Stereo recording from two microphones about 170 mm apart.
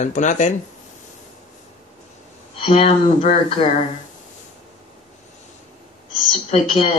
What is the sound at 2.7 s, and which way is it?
Speech, 35° left (ahead or behind).